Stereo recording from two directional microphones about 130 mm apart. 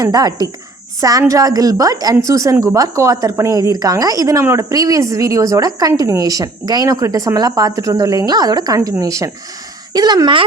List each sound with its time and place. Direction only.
0.0 s a woman's voice: 30° right (ahead or behind)